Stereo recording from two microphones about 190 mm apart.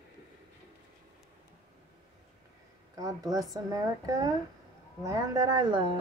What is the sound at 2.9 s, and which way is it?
A woman's voice, 20° right (ahead or behind).